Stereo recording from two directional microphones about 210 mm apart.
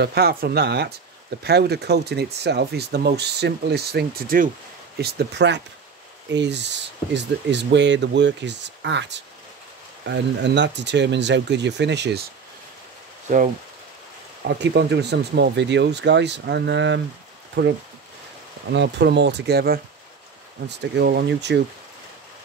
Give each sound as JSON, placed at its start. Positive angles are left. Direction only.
{"t": 0.0, "sound": "speech", "side_deg": -50}
{"t": 14.4, "sound": "speech", "side_deg": -50}